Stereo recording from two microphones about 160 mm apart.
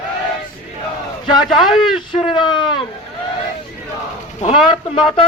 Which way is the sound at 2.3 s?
30° left (ahead or behind).